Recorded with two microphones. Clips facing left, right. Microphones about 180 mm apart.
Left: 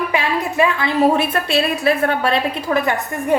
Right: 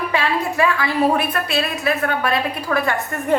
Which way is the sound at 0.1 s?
15° left (ahead or behind).